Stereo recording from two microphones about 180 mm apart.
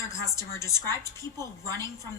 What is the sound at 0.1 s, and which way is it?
A woman's voice, 15° left (ahead or behind).